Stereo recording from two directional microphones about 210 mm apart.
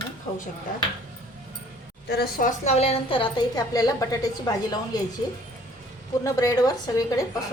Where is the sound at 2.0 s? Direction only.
50° left (ahead or behind); by 5.0 s 20° left (ahead or behind).